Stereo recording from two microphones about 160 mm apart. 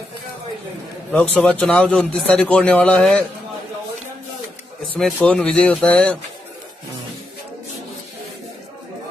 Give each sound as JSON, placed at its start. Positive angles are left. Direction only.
{"t": 1.1, "sound": "a man's voice", "side_deg": 5}
{"t": 4.9, "sound": "speech", "side_deg": 5}